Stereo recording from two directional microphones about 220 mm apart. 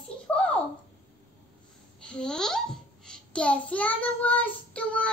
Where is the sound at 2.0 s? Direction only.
5° left (ahead or behind).